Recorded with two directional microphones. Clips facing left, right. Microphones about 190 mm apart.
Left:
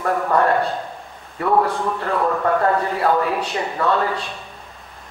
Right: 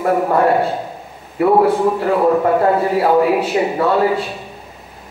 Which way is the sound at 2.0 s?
15° right (ahead or behind).